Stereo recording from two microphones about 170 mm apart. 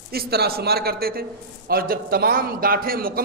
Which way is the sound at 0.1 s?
65° right (ahead or behind).